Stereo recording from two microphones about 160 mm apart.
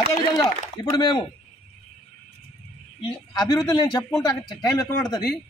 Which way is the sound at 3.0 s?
25° left (ahead or behind).